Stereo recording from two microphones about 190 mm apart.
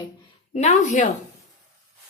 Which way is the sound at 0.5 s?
35° left (ahead or behind).